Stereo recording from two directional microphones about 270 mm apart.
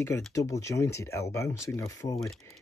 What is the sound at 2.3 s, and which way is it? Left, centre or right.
Speech, centre.